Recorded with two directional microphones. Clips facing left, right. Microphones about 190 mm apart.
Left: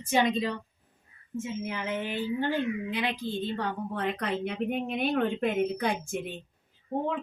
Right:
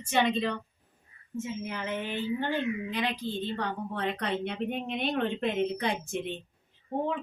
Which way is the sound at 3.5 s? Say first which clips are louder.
Left 1 dB; 10° left (ahead or behind).